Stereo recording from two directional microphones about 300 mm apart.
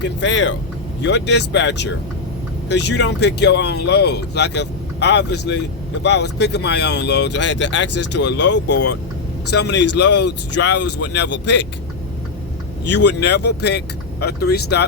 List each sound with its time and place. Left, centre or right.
0.0 s speech: left
10.8 s speech: left
11.0 s speech: left
12.9 s speech: left